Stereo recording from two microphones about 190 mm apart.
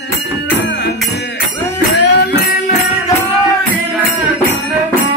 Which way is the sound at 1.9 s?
60° left (ahead or behind).